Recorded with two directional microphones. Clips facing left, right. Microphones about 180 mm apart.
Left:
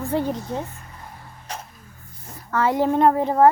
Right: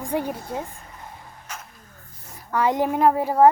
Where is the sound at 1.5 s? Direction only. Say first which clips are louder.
Left 5 dB; 35° left (ahead or behind).